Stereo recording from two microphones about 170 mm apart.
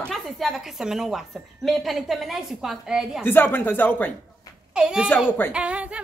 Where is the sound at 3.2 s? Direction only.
10° left (ahead or behind).